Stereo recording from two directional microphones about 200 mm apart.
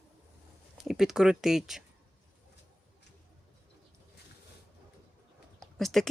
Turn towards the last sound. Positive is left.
turn(degrees=0)  # may be behind; listen again after turning